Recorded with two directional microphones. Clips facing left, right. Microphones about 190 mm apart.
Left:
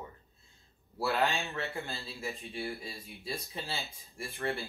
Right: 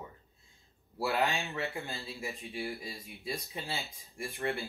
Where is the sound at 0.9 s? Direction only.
15° right (ahead or behind).